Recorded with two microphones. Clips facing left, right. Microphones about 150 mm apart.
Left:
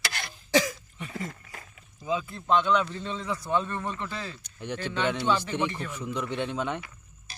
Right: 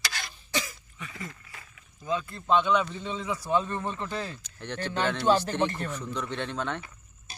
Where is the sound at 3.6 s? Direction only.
20° right (ahead or behind).